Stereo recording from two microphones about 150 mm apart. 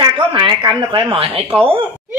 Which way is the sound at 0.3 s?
35° right (ahead or behind).